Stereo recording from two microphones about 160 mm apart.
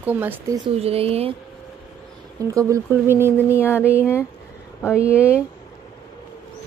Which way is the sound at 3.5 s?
15° left (ahead or behind).